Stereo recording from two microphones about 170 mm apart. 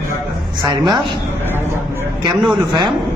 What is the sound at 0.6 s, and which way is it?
Speech, 25° right (ahead or behind).